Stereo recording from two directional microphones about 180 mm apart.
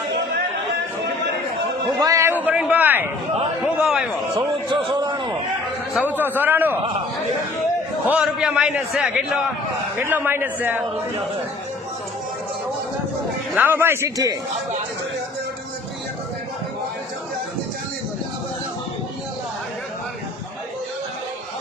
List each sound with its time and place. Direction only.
2.0 s a man's voice: 20° right (ahead or behind); by 4.0 s centre (ahead or behind)
4.9 s a sound: 20° right (ahead or behind)
6.1 s a man's voice: 10° right (ahead or behind)
8.0 s a man's voice: 5° right (ahead or behind)
13.6 s a man's voice: 10° right (ahead or behind)